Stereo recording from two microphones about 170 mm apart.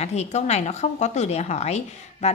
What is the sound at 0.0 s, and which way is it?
A woman's voice, 40° left (ahead or behind).